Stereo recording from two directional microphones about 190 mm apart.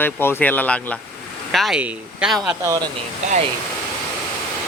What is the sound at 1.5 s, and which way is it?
Speech, centre (ahead or behind).